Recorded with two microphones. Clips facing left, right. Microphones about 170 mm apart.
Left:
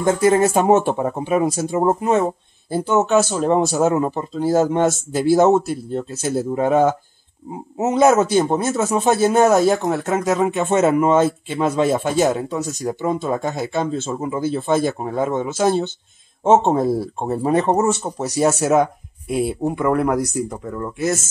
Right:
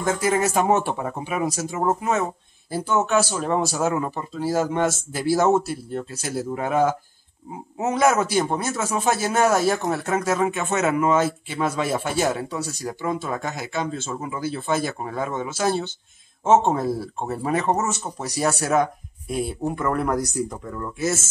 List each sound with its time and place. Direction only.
0.0 s a man's voice: 30° left (ahead or behind)
19.3 s speech: 10° left (ahead or behind)